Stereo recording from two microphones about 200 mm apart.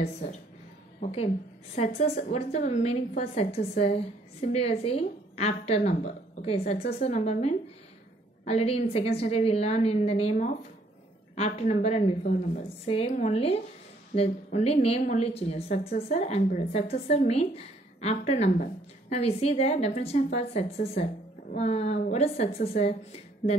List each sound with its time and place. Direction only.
1.8 s a woman's voice: 35° left (ahead or behind)